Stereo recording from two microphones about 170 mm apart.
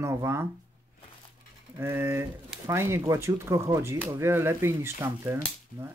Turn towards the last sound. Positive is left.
turn(degrees=-15)  # may be behind; listen again after turning